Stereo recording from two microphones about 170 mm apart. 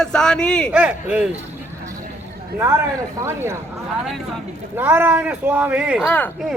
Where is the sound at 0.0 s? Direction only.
5° left (ahead or behind).